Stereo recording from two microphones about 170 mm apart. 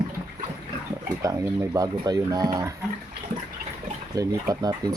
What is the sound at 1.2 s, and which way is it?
Speech, 20° right (ahead or behind).